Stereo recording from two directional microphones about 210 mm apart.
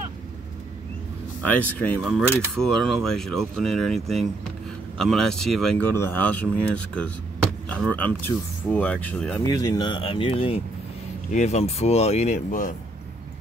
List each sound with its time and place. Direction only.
1.5 s speech: 5° left (ahead or behind); by 12.7 s 40° left (ahead or behind)